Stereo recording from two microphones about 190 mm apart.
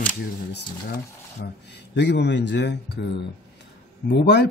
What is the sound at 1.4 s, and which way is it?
Speech, 60° left (ahead or behind).